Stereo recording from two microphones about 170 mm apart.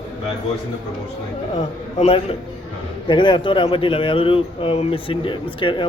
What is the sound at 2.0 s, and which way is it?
Speech, 35° left (ahead or behind).